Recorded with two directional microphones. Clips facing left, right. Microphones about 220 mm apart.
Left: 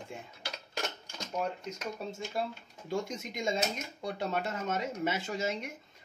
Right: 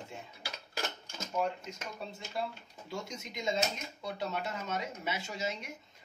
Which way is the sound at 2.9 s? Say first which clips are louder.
Left 6 dB; 50° left (ahead or behind).